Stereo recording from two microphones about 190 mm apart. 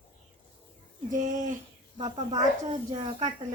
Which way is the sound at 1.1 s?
40° right (ahead or behind).